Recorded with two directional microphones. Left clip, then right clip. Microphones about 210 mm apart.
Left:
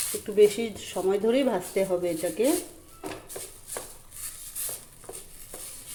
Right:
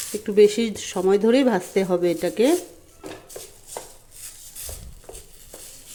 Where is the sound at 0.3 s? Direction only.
40° right (ahead or behind).